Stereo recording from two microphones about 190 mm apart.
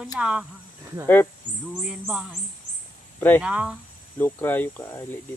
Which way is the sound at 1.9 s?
5° right (ahead or behind).